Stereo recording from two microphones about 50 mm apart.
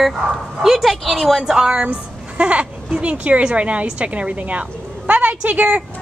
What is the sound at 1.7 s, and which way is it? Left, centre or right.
A woman's voice, right.